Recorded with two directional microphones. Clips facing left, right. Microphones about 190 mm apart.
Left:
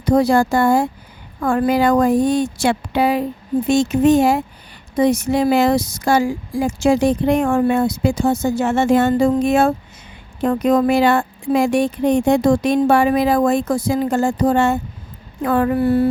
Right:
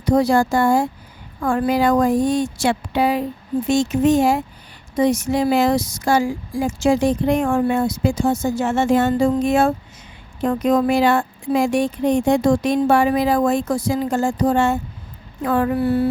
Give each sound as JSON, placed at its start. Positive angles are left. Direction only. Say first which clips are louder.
{"t": 0.0, "sound": "speech", "louder": "left 2 dB", "side_deg": 60}